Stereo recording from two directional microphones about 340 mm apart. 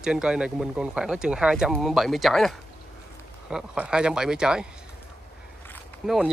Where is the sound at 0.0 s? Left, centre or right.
Centre.